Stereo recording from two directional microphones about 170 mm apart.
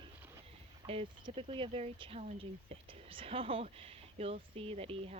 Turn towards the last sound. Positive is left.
turn(degrees=-35)  # may be behind; listen again after turning